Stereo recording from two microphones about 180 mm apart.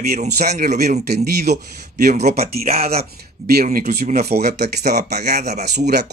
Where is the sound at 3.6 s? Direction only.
50° right (ahead or behind).